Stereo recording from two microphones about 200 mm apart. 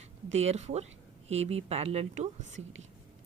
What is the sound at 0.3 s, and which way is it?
A woman's voice, 30° right (ahead or behind).